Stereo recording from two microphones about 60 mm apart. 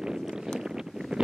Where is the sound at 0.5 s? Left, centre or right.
Centre.